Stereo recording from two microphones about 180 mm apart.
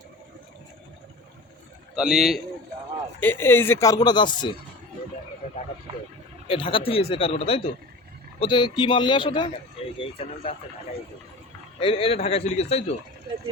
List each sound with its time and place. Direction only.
2.0 s a man's voice: 5° right (ahead or behind)
3.2 s speech: 10° left (ahead or behind)
6.5 s a man's voice: 30° left (ahead or behind)
11.8 s speech: 30° left (ahead or behind)